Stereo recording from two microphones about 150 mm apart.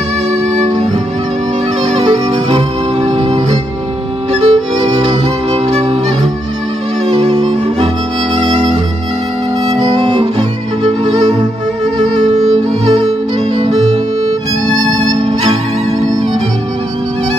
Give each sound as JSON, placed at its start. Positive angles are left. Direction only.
{"t": 1.8, "sound": "music", "side_deg": -50}
{"t": 7.1, "sound": "music", "side_deg": -45}
{"t": 9.9, "sound": "music", "side_deg": -30}
{"t": 12.0, "sound": "music", "side_deg": -50}
{"t": 15.0, "sound": "music", "side_deg": -45}